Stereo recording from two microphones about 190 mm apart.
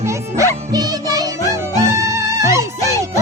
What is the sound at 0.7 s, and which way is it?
Music, 20° right (ahead or behind).